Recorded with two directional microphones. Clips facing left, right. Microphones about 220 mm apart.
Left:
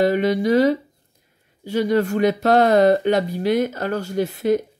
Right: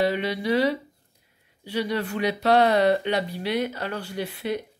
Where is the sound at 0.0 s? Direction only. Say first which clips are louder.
Left 7 dB; 45° left (ahead or behind).